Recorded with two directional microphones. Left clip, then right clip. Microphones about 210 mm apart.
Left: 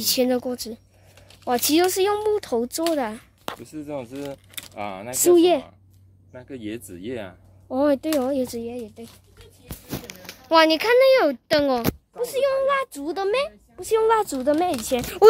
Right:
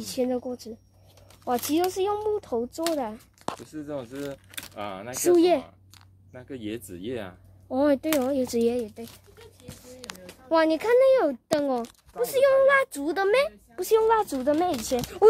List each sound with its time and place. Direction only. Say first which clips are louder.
0.0 s speech: left 6 dB; 10° left (ahead or behind)
3.4 s speech: left 1 dB; 30° left (ahead or behind)
4.5 s keys jangling: left 1 dB; 15° right (ahead or behind)
4.7 s speech: left 4 dB; 30° left (ahead or behind)
5.1 s speech: left 4 dB; 15° left (ahead or behind)
10.5 s speech: left 5 dB; 5° left (ahead or behind)
13.9 s speech: left 2 dB; 5° left (ahead or behind)